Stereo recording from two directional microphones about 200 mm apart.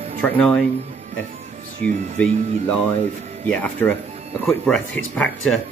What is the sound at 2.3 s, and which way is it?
Speech, 35° right (ahead or behind).